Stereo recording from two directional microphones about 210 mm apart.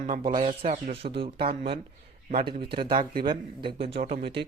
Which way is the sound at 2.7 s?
25° right (ahead or behind).